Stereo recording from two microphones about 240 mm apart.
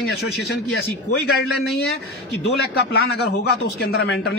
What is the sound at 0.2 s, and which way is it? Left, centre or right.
Speech, left.